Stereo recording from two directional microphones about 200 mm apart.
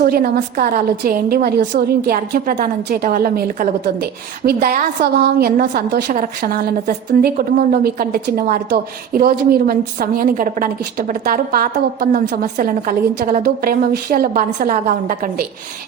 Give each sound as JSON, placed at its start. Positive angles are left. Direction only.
{"t": 0.0, "sound": "a woman's voice", "side_deg": -45}